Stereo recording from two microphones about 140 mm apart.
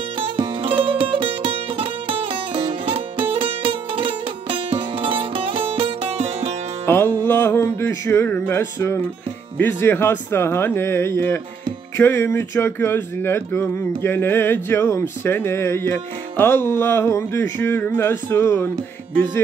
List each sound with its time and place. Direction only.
0.4 s music: 40° right (ahead or behind)
6.9 s music: 15° left (ahead or behind)
9.6 s speech: 15° left (ahead or behind)